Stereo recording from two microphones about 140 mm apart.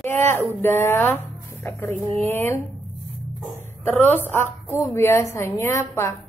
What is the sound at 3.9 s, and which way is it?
A woman's voice, 15° left (ahead or behind).